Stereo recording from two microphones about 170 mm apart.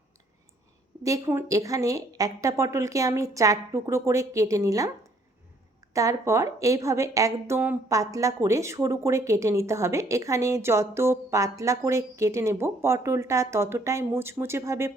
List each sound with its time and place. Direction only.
1.0 s a woman's voice: 15° right (ahead or behind)
5.9 s a woman's voice: 20° right (ahead or behind)